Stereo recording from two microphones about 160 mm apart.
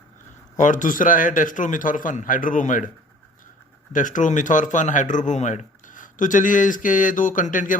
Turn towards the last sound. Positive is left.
turn(degrees=55)  # may be behind; listen again after turning